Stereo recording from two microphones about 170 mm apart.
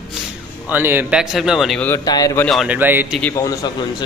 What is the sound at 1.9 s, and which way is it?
Speech, 20° left (ahead or behind).